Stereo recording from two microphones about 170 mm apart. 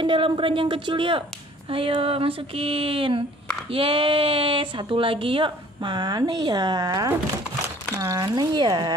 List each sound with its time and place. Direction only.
0.0 s speech: 30° right (ahead or behind)